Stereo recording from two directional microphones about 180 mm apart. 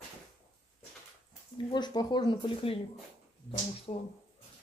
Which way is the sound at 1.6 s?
25° left (ahead or behind).